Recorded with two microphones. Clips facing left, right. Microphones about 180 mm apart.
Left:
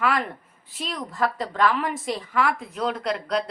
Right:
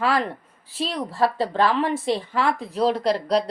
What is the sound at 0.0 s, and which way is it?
A woman's voice, 30° right (ahead or behind).